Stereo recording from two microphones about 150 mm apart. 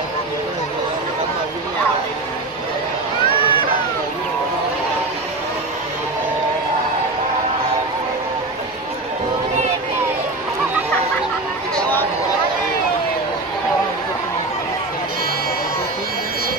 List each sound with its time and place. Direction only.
3.3 s run: 35° left (ahead or behind)